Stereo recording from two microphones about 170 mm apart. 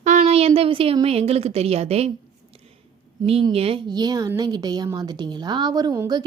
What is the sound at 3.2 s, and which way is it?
A woman's voice, 35° right (ahead or behind).